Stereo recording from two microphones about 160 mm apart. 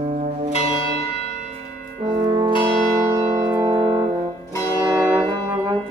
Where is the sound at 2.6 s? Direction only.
20° right (ahead or behind).